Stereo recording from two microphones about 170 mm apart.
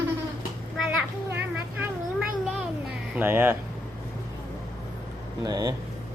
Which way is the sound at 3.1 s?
10° right (ahead or behind).